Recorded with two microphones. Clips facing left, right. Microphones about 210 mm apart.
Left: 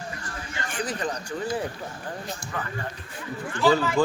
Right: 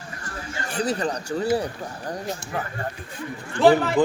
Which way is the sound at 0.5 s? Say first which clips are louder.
Right 6 dB; 40° right (ahead or behind).